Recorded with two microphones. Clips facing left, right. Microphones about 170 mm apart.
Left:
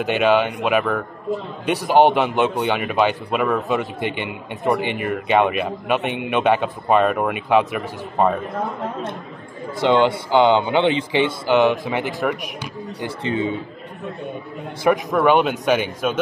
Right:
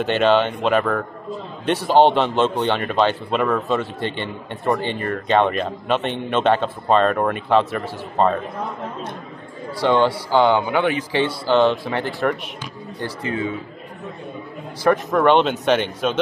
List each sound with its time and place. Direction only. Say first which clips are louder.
0.0 s a man's voice: even; 10° left (ahead or behind)
9.8 s speech: left 1 dB; 20° left (ahead or behind)
14.8 s a man's voice: even; 20° left (ahead or behind)